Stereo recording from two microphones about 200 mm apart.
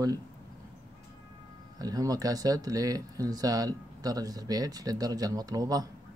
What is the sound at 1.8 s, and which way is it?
Speech, 20° right (ahead or behind).